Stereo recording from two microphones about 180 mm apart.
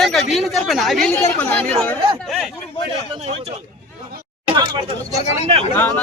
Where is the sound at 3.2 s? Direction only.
35° right (ahead or behind).